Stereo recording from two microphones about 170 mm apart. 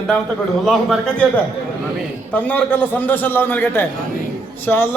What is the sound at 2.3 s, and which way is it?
A man's voice, 10° left (ahead or behind).